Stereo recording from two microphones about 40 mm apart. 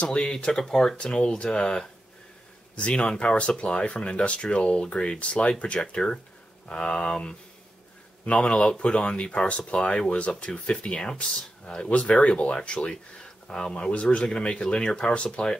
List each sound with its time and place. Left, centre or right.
0.0 s speech: left
2.9 s speech: left
6.7 s speech: left